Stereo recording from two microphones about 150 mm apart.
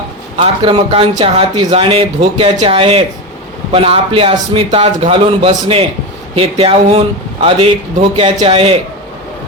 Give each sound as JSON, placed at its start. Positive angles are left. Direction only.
{"t": 0.3, "sound": "a man's voice", "side_deg": -40}
{"t": 8.1, "sound": "a man's voice", "side_deg": -35}